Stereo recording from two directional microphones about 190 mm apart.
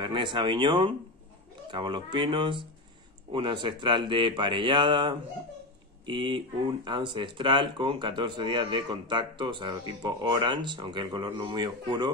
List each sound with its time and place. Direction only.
0.0 s speech: 25° right (ahead or behind)